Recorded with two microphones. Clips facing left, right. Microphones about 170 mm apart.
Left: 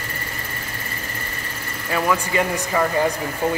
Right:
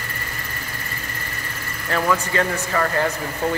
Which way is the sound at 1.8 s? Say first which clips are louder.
Even; 10° left (ahead or behind).